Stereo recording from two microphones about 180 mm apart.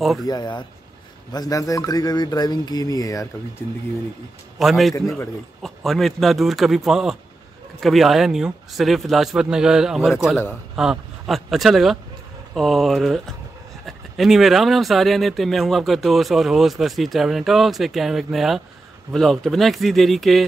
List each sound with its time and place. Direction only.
0.0 s speech: centre (ahead or behind)
0.3 s speech: 25° left (ahead or behind)
4.6 s speech: centre (ahead or behind)
4.9 s speech: 20° left (ahead or behind)
5.6 s speech: centre (ahead or behind)